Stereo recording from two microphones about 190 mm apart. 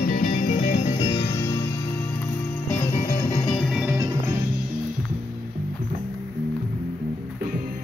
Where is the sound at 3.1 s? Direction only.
20° left (ahead or behind).